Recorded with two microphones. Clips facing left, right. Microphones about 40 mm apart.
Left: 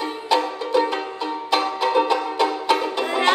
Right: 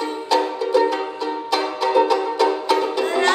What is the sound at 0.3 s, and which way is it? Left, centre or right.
Music, centre.